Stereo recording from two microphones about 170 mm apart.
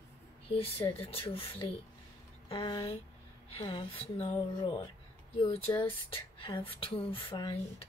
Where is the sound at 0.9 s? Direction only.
35° left (ahead or behind).